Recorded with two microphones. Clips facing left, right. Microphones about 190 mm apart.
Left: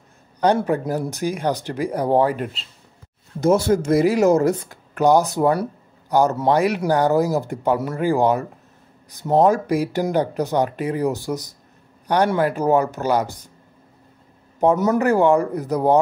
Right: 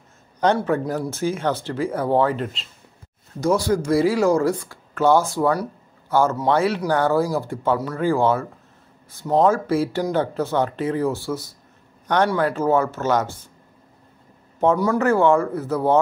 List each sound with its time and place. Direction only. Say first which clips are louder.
0.4 s speech: left 1 dB; 15° left (ahead or behind)
3.3 s speech: left 3 dB; 25° left (ahead or behind)
14.6 s speech: left 1 dB; 15° left (ahead or behind)